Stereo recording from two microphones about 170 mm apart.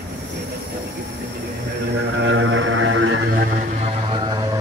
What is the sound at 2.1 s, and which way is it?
Music, 90° right.